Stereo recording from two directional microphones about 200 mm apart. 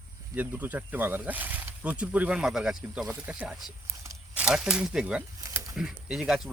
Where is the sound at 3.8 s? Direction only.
15° right (ahead or behind).